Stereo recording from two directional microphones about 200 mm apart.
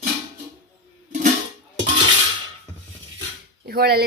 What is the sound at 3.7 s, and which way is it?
Speech, 50° right (ahead or behind).